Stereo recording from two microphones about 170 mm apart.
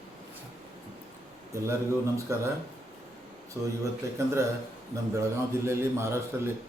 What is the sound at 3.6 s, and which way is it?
Speech, 15° right (ahead or behind).